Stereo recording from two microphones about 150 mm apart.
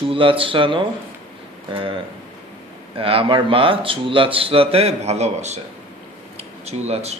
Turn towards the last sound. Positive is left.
turn(degrees=-45)  # may be behind; listen again after turning